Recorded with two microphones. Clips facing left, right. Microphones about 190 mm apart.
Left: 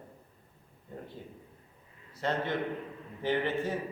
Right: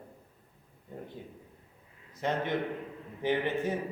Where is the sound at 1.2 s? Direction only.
15° right (ahead or behind).